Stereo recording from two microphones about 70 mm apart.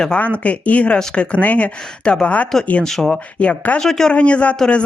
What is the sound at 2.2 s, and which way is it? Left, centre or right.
Speech, left.